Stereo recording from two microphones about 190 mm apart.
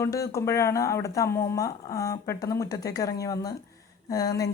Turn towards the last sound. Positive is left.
turn(degrees=20)  # may be behind; listen again after turning